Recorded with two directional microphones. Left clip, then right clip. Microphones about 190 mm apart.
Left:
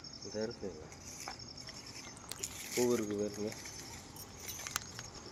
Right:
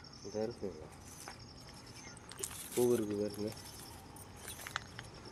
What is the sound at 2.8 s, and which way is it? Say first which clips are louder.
Speech: right 1 dB; 35° right (ahead or behind).